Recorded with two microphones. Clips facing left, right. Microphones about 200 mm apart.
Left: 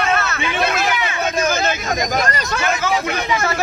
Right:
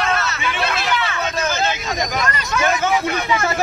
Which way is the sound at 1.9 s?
40° left (ahead or behind).